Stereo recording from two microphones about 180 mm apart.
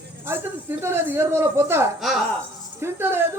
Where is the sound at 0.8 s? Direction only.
15° right (ahead or behind).